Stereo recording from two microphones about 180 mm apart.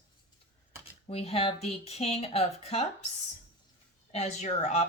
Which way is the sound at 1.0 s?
35° left (ahead or behind).